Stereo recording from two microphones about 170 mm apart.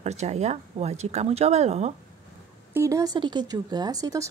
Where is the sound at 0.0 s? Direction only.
40° right (ahead or behind).